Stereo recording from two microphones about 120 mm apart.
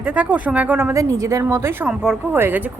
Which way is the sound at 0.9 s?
25° right (ahead or behind).